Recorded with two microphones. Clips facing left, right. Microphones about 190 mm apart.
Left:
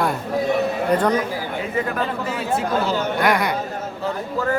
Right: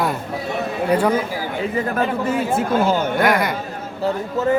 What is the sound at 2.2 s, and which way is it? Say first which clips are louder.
Speech: right 3 dB; 50° right (ahead or behind).